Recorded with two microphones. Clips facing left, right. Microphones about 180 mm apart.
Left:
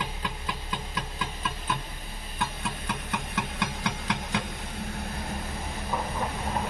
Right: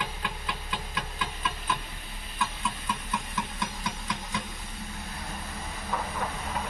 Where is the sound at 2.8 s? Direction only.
75° left (ahead or behind).